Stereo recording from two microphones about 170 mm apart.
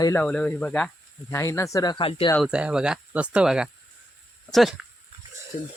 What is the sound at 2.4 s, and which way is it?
Speech, 5° right (ahead or behind).